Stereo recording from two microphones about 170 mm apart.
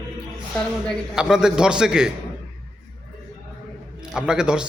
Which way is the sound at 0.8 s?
5° right (ahead or behind).